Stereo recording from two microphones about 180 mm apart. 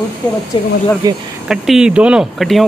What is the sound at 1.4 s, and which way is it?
Speech, centre (ahead or behind).